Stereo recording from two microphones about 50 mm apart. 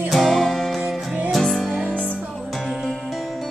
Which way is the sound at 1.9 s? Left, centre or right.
Left.